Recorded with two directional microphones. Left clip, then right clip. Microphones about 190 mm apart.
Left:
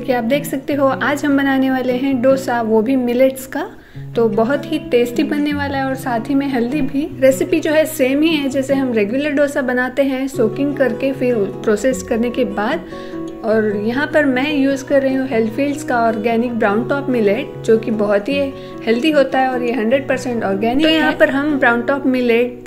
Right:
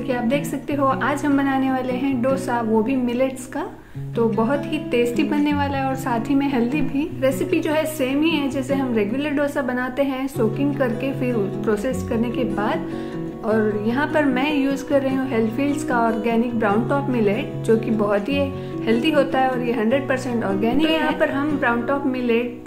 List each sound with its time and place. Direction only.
0.1 s a woman's voice: 25° left (ahead or behind)
7.2 s a woman's voice: 25° left (ahead or behind)
20.8 s a woman's voice: 35° left (ahead or behind)